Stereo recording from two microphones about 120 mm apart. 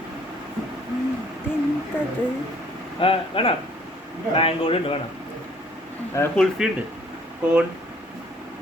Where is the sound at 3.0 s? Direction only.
50° left (ahead or behind).